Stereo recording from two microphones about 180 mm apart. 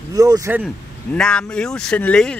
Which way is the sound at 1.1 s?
5° left (ahead or behind).